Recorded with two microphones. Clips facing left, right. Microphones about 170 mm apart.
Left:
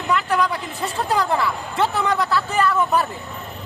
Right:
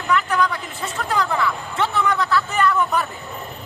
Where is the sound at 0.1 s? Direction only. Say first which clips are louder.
Even; 35° left (ahead or behind).